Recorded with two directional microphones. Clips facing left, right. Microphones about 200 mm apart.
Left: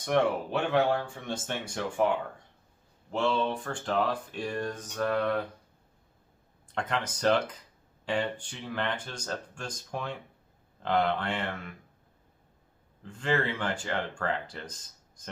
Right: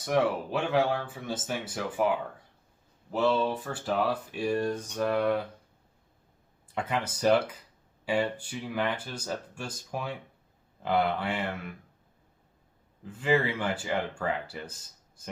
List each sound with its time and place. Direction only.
0.0 s speech: 5° right (ahead or behind)
6.7 s speech: 10° right (ahead or behind)
13.0 s speech: 5° right (ahead or behind)